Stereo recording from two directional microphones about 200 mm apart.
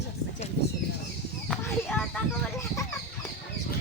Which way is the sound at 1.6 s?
5° left (ahead or behind).